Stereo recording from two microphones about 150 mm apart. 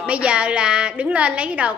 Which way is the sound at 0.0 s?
10° right (ahead or behind).